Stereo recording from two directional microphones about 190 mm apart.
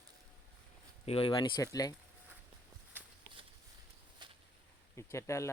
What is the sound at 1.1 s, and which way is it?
Speech, 25° left (ahead or behind).